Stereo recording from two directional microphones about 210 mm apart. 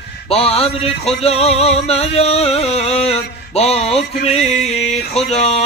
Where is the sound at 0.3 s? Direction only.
30° left (ahead or behind).